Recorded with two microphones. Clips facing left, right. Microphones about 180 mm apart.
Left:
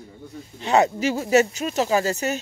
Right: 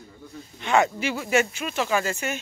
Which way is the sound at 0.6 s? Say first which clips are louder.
Left 3 dB; 35° left (ahead or behind).